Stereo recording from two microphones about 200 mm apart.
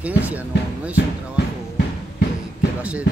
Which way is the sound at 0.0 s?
5° right (ahead or behind).